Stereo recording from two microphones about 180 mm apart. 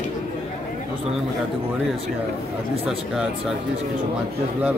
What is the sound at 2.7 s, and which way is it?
Speech, 35° right (ahead or behind).